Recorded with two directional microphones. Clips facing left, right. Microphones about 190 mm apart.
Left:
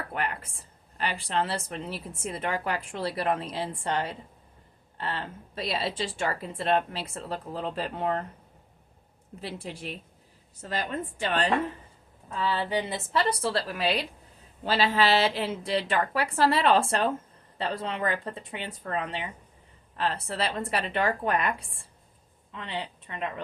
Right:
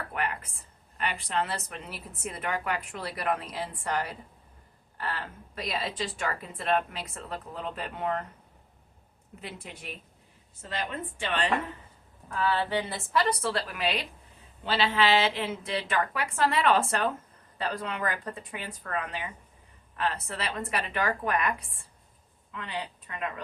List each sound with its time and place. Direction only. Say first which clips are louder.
0.1 s a sound: even; 30° left (ahead or behind)
0.9 s a woman's voice: left 2 dB; 30° left (ahead or behind)
9.4 s a woman's voice: left 5 dB; 35° left (ahead or behind)
12.3 s a woman's voice: even; 20° left (ahead or behind)
13.4 s a woman's voice: left 2 dB; 35° left (ahead or behind)